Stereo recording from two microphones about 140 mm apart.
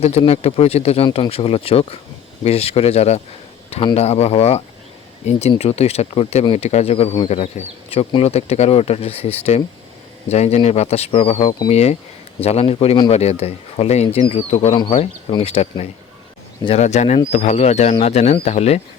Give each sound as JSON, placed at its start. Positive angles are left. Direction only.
{"t": 0.0, "sound": "speech", "side_deg": 50}